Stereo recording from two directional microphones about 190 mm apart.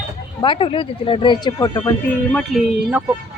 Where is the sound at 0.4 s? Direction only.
25° left (ahead or behind).